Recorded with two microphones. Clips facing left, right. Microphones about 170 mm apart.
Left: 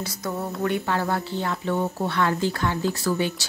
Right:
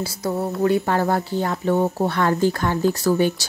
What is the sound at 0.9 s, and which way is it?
A woman's voice, 45° right (ahead or behind).